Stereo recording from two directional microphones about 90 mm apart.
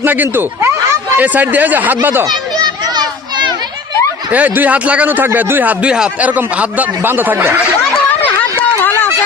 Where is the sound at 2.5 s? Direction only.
45° right (ahead or behind).